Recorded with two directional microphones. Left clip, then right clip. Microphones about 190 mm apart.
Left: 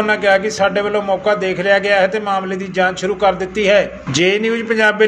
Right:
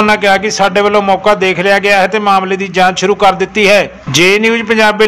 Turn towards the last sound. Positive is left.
turn(degrees=-25)  # may be behind; listen again after turning